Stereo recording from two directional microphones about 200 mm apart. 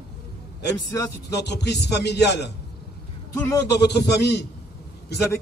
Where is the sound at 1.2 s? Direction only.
55° left (ahead or behind).